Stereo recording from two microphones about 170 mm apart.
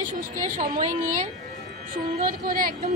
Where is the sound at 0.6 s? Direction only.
50° right (ahead or behind).